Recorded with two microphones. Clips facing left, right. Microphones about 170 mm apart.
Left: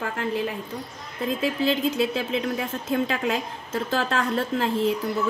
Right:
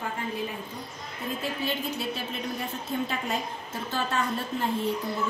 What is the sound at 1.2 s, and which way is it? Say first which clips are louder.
A woman's voice: left 8 dB; 90° left.